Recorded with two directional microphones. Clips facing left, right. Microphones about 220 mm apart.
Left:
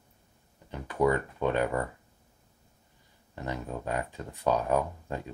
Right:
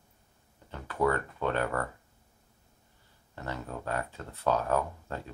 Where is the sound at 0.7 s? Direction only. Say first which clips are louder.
Left 3 dB; 15° left (ahead or behind).